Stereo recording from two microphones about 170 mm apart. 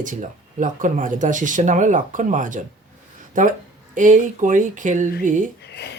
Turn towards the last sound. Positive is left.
turn(degrees=-50)  # may be behind; listen again after turning